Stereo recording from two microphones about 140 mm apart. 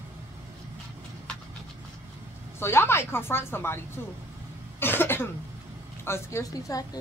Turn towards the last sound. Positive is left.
turn(degrees=25)  # may be behind; listen again after turning